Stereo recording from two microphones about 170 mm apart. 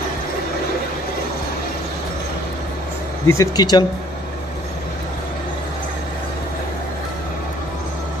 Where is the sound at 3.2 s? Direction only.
20° left (ahead or behind).